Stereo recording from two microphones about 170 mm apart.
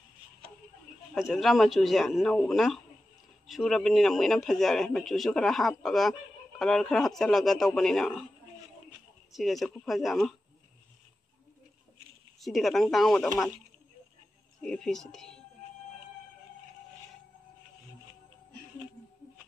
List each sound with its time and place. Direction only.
1.1 s speech: centre (ahead or behind)
9.3 s speech: centre (ahead or behind)
12.4 s speech: centre (ahead or behind)
14.6 s speech: 5° left (ahead or behind)